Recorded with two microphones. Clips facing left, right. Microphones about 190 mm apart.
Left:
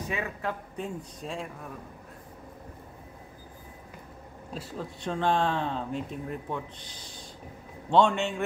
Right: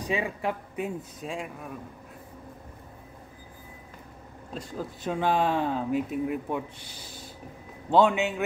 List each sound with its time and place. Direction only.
0.0 s speech: 15° right (ahead or behind)
4.6 s a man's voice: centre (ahead or behind)